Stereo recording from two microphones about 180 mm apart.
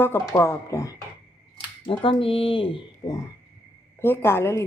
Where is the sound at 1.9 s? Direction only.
30° left (ahead or behind).